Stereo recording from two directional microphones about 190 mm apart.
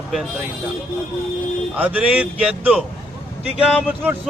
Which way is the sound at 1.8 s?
5° right (ahead or behind).